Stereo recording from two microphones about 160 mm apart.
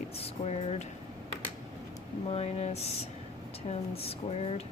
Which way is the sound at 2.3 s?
40° left (ahead or behind).